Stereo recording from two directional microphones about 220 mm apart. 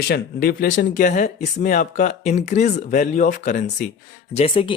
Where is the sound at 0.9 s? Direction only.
35° left (ahead or behind).